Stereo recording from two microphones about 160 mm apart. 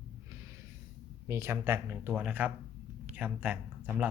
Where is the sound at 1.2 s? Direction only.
15° right (ahead or behind).